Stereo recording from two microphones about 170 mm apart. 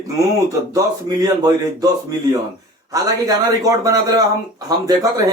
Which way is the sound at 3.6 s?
20° right (ahead or behind).